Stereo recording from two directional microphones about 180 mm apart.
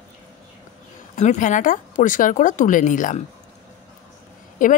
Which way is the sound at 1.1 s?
45° left (ahead or behind).